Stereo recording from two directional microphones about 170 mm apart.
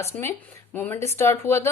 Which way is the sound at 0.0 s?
15° left (ahead or behind).